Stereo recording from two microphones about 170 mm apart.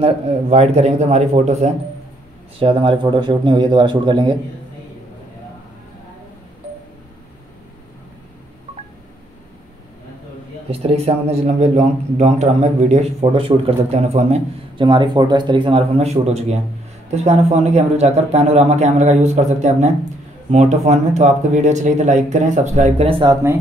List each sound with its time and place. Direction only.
0.0 s a man's voice: 40° right (ahead or behind)
10.7 s a man's voice: 35° right (ahead or behind)